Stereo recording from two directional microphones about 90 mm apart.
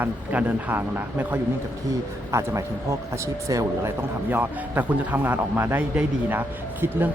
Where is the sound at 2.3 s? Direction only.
35° right (ahead or behind).